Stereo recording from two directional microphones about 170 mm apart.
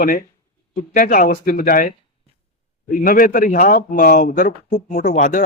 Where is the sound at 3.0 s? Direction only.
55° left (ahead or behind).